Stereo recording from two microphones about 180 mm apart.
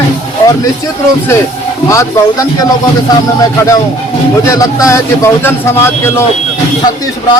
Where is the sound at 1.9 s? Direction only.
15° left (ahead or behind).